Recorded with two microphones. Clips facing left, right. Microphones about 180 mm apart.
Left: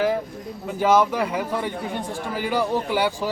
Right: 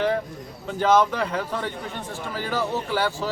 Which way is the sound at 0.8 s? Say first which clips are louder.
Left 1 dB; 10° left (ahead or behind).